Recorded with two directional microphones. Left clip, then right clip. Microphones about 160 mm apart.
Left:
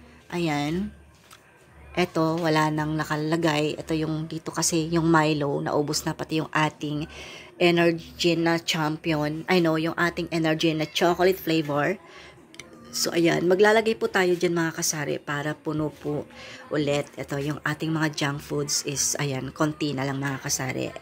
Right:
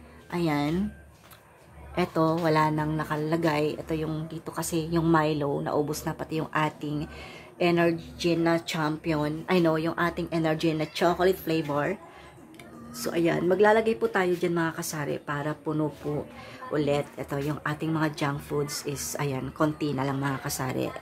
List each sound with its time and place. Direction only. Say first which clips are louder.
0.3 s speech: left 1 dB; 15° left (ahead or behind)
2.0 s a woman's voice: left 1 dB; 15° left (ahead or behind)
16.7 s speech: left 1 dB; 15° left (ahead or behind)